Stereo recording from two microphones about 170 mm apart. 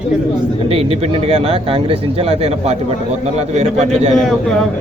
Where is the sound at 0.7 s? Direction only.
35° right (ahead or behind).